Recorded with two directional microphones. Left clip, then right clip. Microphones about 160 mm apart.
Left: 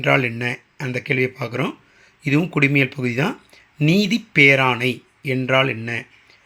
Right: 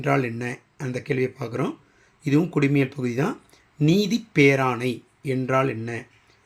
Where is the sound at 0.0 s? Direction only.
Centre (ahead or behind).